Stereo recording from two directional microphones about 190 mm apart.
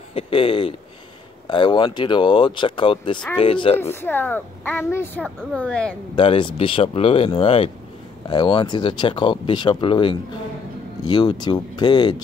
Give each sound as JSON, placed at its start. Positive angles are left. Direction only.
{"t": 0.1, "sound": "speech", "side_deg": 25}
{"t": 3.9, "sound": "a woman's voice", "side_deg": 10}
{"t": 6.1, "sound": "speech", "side_deg": 25}